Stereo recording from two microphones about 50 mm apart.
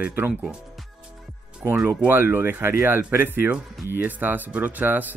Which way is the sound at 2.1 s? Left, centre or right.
Right.